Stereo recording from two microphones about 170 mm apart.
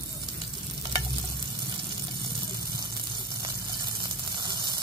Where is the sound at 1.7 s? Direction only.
25° right (ahead or behind).